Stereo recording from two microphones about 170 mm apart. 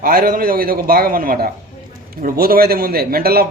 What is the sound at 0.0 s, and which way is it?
A man's voice, 55° right (ahead or behind).